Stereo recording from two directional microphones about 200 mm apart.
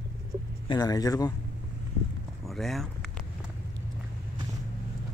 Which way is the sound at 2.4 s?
Centre (ahead or behind).